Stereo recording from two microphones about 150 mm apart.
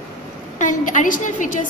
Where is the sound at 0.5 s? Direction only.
60° left (ahead or behind).